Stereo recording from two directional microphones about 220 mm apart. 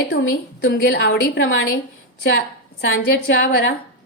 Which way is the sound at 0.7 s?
45° left (ahead or behind).